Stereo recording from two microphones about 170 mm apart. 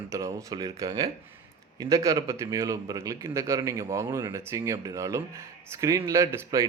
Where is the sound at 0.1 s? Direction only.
20° right (ahead or behind).